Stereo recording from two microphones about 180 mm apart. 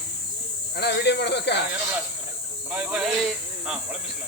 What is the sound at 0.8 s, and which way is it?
Speech, 70° left (ahead or behind).